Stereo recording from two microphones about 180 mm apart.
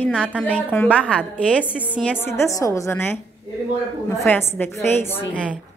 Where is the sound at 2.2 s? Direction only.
15° left (ahead or behind).